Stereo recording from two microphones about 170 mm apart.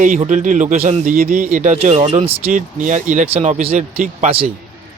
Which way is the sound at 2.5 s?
50° right (ahead or behind).